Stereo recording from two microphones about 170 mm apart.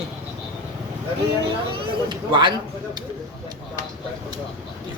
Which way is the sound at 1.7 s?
30° right (ahead or behind).